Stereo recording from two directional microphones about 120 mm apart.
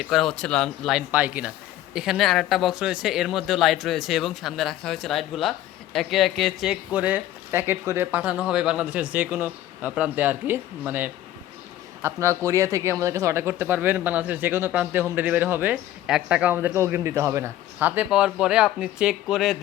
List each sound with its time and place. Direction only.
0.0 s speech: centre (ahead or behind)
0.9 s speech: 10° right (ahead or behind)